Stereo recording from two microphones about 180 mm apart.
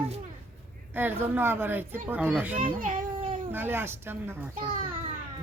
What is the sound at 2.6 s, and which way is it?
Speech, 50° right (ahead or behind).